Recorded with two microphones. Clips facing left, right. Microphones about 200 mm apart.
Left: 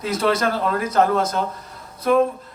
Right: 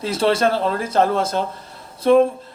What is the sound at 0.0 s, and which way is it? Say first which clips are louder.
A man's voice: right 2 dB; 30° right (ahead or behind).